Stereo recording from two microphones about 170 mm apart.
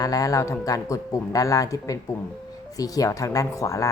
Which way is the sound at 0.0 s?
20° left (ahead or behind).